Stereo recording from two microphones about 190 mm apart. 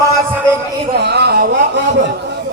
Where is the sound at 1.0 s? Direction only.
60° right (ahead or behind).